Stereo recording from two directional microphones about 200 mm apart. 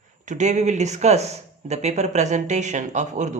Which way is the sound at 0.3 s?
35° right (ahead or behind).